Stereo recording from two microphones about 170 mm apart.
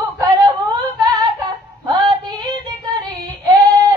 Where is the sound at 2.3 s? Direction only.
25° right (ahead or behind).